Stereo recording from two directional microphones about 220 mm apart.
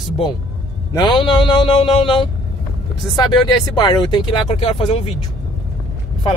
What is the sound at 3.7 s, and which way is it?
Speech, 20° left (ahead or behind).